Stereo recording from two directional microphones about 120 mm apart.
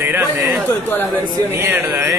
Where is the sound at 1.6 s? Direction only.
20° right (ahead or behind).